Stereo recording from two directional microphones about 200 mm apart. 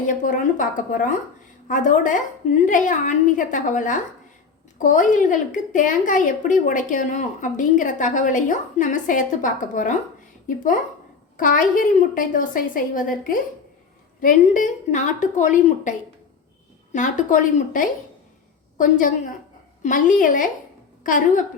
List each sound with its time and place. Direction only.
0.1 s a woman's voice: 40° left (ahead or behind)
11.3 s a woman's voice: 40° left (ahead or behind)